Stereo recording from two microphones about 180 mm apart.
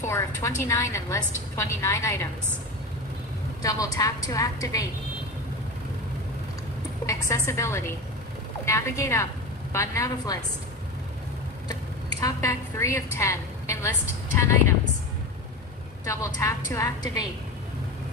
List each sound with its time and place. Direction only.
0.0 s a woman's voice: 15° left (ahead or behind)
3.6 s a woman's voice: 20° left (ahead or behind)
7.1 s a woman's voice: 15° left (ahead or behind)
11.7 s a woman's voice: 20° left (ahead or behind)
16.1 s a woman's voice: 15° left (ahead or behind)